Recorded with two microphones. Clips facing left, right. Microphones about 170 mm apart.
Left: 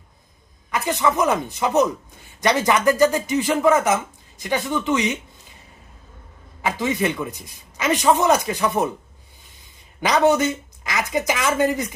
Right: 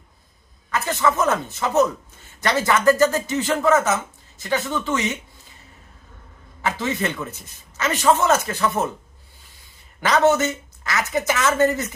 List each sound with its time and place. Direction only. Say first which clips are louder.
0.7 s speech: even; 15° left (ahead or behind)
6.6 s speech: left 2 dB; 15° left (ahead or behind)
10.0 s speech: even; 15° left (ahead or behind)